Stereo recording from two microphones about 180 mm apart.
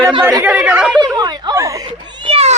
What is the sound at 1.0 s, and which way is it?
Speech, 20° right (ahead or behind).